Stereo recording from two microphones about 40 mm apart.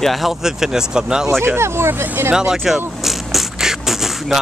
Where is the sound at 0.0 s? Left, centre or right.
Centre.